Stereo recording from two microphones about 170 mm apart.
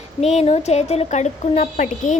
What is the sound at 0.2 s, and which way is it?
Speech, 40° left (ahead or behind).